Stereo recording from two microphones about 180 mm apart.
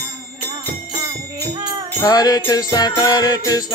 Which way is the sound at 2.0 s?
20° left (ahead or behind).